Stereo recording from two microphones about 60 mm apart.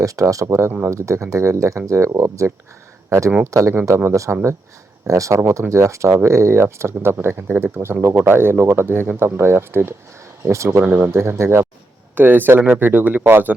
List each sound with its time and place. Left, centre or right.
0.0 s speech: right
0.9 s speech: right
10.4 s speech: right
10.8 s speech: right
12.1 s speech: right